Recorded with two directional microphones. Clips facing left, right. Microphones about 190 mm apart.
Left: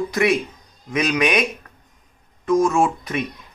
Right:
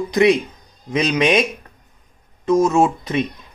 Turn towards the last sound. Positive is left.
turn(degrees=-20)  # may be behind; listen again after turning